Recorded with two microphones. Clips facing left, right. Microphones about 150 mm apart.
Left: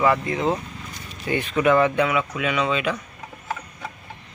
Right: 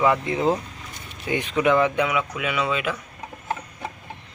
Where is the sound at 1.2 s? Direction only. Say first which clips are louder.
Left 1 dB; 15° right (ahead or behind).